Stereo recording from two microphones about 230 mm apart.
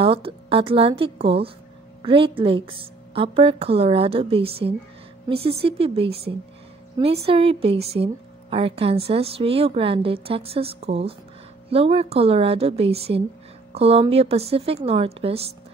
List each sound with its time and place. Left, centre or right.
0.0 s a woman's voice: right